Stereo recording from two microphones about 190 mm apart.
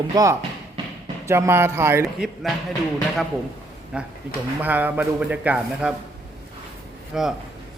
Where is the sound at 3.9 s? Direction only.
5° right (ahead or behind).